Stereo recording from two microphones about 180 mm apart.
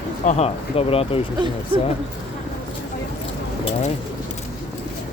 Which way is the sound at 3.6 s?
35° left (ahead or behind).